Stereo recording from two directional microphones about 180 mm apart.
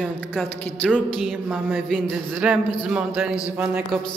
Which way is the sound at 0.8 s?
Centre (ahead or behind).